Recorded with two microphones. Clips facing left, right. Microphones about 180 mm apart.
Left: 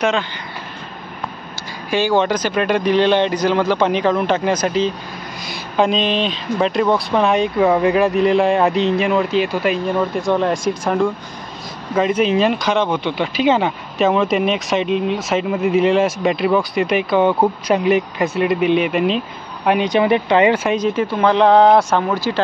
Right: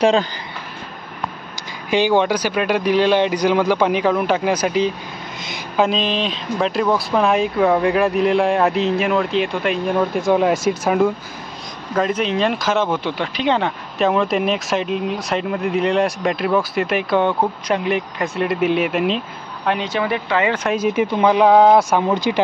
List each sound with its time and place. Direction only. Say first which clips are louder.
0.0 s speech: right 3 dB; 35° right (ahead or behind)
1.9 s speech: even; 15° right (ahead or behind)
11.9 s speech: left 3 dB; 5° left (ahead or behind)
19.6 s speech: left 5 dB; 15° left (ahead or behind)
20.7 s speech: even; 10° right (ahead or behind)
22.0 s speech: right 1 dB; 20° right (ahead or behind)